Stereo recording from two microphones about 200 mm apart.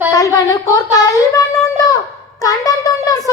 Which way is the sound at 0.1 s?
20° left (ahead or behind).